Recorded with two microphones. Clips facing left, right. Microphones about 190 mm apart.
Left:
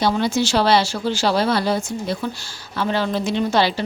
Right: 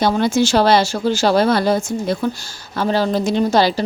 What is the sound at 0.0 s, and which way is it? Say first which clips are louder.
A woman's voice: right 3 dB; 50° right (ahead or behind).